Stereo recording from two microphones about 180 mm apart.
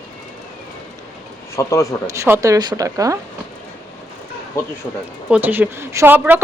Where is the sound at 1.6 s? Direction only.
15° left (ahead or behind).